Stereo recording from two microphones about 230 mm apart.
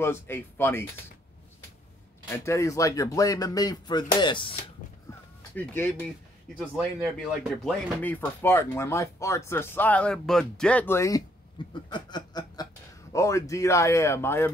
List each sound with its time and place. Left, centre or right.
0.0 s speech: centre
2.2 s speech: centre
5.6 s speech: centre
11.7 s chuckle: centre
13.1 s speech: centre